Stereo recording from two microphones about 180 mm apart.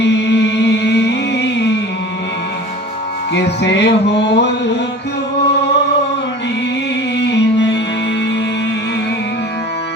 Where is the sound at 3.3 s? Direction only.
75° left (ahead or behind).